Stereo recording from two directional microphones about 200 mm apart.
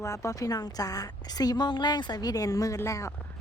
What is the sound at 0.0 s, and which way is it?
A woman's voice, 15° left (ahead or behind).